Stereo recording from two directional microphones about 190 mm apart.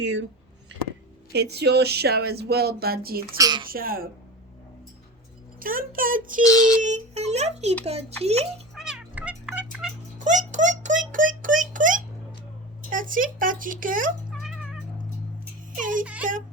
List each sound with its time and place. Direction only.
1.3 s speech: 60° right (ahead or behind)
3.3 s speech: 20° right (ahead or behind)
3.7 s speech: 50° right (ahead or behind)
5.5 s speech: 50° right (ahead or behind)
6.4 s child singing: 20° left (ahead or behind)
6.8 s a child's voice: 35° right (ahead or behind)
8.7 s cat: 5° right (ahead or behind)
10.2 s a sound: 40° right (ahead or behind)
12.9 s speech: 45° right (ahead or behind)
14.4 s cat: centre (ahead or behind)
15.7 s music: 45° right (ahead or behind)